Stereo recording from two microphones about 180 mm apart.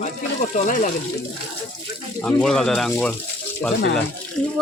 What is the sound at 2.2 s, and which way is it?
Speech, 5° left (ahead or behind).